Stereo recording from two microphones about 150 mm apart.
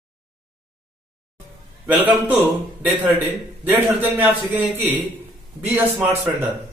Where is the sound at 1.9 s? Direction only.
10° right (ahead or behind).